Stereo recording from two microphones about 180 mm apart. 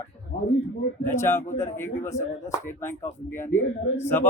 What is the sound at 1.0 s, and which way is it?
Speech, 15° left (ahead or behind).